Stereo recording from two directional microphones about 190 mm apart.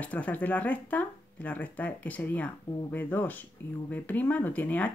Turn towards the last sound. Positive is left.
turn(degrees=10)  # may be behind; listen again after turning